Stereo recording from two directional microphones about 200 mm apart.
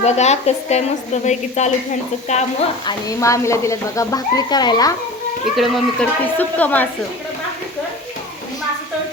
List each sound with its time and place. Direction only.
0.0 s a woman's voice: 35° left (ahead or behind)
2.8 s speech: 15° left (ahead or behind)
5.5 s speech: centre (ahead or behind)